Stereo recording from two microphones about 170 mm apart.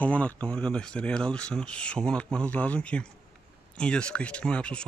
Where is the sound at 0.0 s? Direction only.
5° left (ahead or behind).